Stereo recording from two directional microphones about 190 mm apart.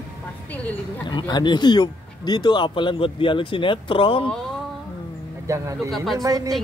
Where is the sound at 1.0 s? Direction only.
25° left (ahead or behind).